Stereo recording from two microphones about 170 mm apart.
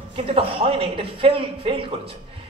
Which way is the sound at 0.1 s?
35° right (ahead or behind).